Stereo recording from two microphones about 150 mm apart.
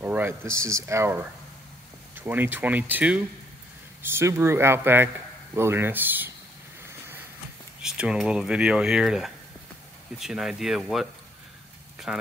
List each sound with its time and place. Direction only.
0.0 s speech: 15° right (ahead or behind)
7.8 s speech: 5° right (ahead or behind)